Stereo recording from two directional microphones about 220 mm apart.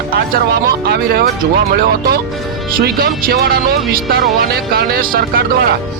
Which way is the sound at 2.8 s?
40° right (ahead or behind).